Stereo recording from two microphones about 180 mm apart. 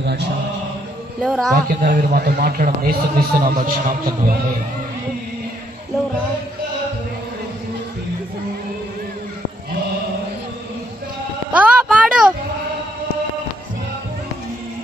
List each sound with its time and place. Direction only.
1.2 s a man's voice: centre (ahead or behind)
1.7 s a man's voice: 50° right (ahead or behind)
11.5 s a sound: 10° right (ahead or behind)